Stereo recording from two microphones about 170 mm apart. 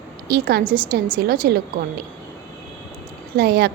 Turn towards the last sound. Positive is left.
turn(degrees=-65)  # may be behind; listen again after turning